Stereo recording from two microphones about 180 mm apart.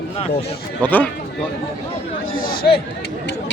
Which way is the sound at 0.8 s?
10° left (ahead or behind).